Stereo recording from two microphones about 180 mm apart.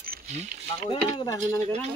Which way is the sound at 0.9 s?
30° left (ahead or behind).